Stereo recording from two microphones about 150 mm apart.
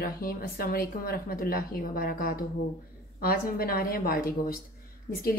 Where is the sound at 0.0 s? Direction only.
80° left.